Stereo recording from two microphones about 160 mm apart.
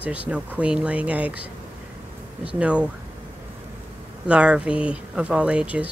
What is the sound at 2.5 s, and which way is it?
Speech, 10° right (ahead or behind).